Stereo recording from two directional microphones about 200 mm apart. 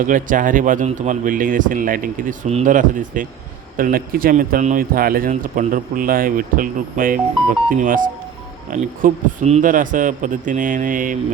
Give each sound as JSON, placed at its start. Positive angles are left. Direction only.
{"t": 0.0, "sound": "speech", "side_deg": -40}